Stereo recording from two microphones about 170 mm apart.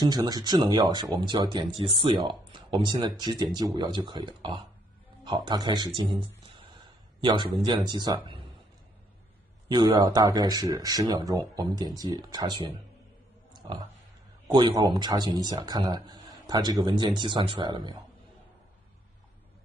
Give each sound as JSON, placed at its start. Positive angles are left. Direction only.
{"t": 0.0, "sound": "speech", "side_deg": -25}
{"t": 9.7, "sound": "speech", "side_deg": -25}
{"t": 13.5, "sound": "a sound", "side_deg": -25}
{"t": 14.5, "sound": "speech", "side_deg": -25}